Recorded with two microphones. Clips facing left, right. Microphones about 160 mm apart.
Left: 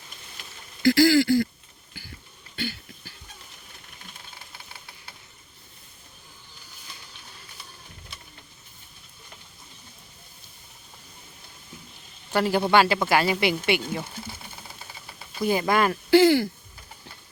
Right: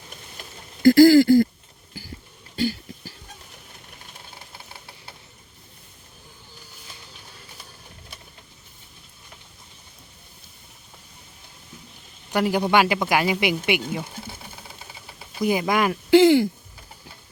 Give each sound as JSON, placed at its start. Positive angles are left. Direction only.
{"t": 0.8, "sound": "speech", "side_deg": -50}
{"t": 1.9, "sound": "a sound", "side_deg": -40}
{"t": 2.6, "sound": "cough", "side_deg": -40}
{"t": 12.3, "sound": "speech", "side_deg": -15}
{"t": 15.4, "sound": "speech", "side_deg": -15}